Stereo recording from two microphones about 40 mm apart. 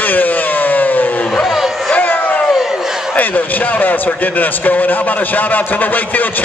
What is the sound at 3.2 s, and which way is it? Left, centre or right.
A man's voice, left.